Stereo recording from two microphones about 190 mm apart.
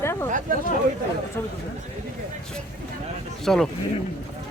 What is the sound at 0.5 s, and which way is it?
Speech, 45° right (ahead or behind).